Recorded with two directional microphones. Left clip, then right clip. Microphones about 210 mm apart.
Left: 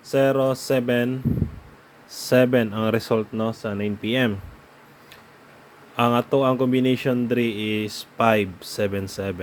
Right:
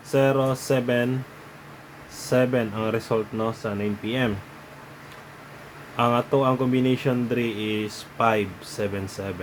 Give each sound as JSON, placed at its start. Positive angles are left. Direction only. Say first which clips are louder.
{"t": 0.1, "sound": "a man's voice", "louder": "left 2 dB", "side_deg": 25}
{"t": 2.1, "sound": "speech", "louder": "left 4 dB", "side_deg": 30}
{"t": 6.0, "sound": "a man's voice", "louder": "left 1 dB", "side_deg": 30}